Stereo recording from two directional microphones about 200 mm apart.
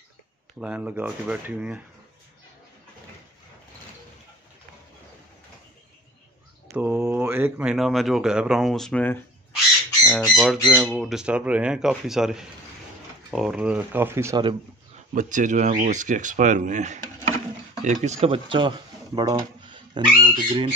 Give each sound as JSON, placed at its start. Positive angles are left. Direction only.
{"t": 0.6, "sound": "speech", "side_deg": -5}
{"t": 6.7, "sound": "speech", "side_deg": -10}
{"t": 15.1, "sound": "speech", "side_deg": -40}